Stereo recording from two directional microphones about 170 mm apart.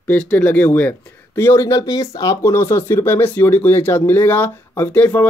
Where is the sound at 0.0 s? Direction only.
10° left (ahead or behind).